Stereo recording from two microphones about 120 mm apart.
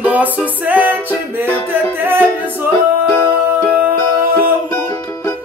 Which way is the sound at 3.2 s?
15° right (ahead or behind).